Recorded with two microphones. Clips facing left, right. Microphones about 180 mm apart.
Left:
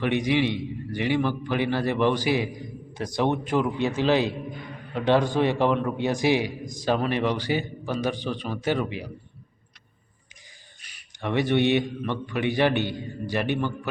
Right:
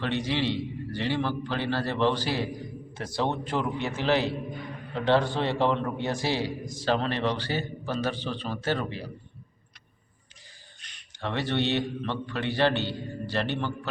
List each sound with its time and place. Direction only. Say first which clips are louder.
0.0 s a man's voice: left 5 dB; 15° left (ahead or behind)
10.8 s a man's voice: left 1 dB; 10° left (ahead or behind)